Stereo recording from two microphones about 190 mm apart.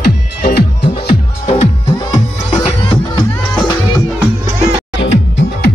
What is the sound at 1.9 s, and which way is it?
Music, 20° left (ahead or behind).